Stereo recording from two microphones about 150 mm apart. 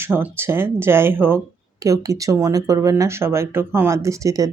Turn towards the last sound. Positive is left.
turn(degrees=-20)  # may be behind; listen again after turning